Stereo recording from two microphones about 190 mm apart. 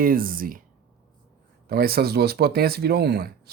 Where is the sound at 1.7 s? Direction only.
55° right (ahead or behind).